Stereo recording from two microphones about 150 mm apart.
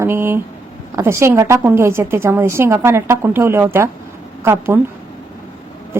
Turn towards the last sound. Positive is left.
turn(degrees=-15)  # may be behind; listen again after turning